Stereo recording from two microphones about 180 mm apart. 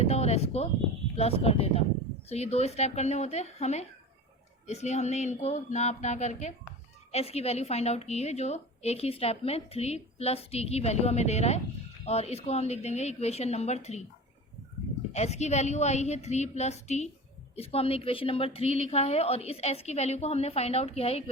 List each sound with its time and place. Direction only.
0.0 s a sound: 35° left (ahead or behind)
1.1 s a woman's voice: 35° left (ahead or behind)
15.1 s a woman's voice: 40° left (ahead or behind)